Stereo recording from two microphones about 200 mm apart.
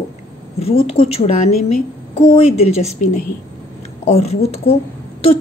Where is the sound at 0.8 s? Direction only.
30° left (ahead or behind).